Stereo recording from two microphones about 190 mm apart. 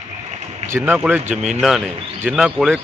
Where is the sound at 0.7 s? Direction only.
10° right (ahead or behind).